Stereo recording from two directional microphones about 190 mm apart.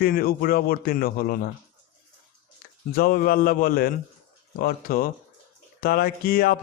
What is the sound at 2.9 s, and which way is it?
Speech, 50° left (ahead or behind).